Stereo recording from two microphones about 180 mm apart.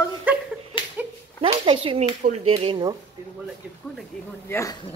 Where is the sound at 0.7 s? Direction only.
25° left (ahead or behind).